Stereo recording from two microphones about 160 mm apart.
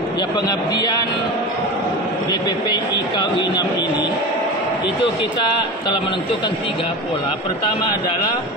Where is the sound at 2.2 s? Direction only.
25° left (ahead or behind).